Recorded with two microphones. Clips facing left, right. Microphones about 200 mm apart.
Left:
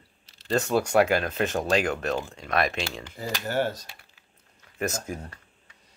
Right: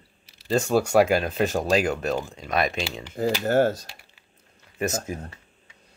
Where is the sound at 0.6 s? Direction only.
30° right (ahead or behind).